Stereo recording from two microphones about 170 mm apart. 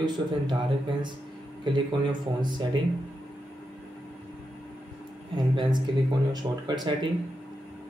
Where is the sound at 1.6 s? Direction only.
30° right (ahead or behind).